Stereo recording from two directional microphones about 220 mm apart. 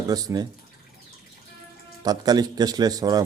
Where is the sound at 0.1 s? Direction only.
15° right (ahead or behind).